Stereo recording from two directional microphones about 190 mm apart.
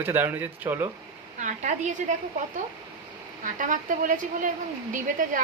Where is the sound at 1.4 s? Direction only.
40° right (ahead or behind).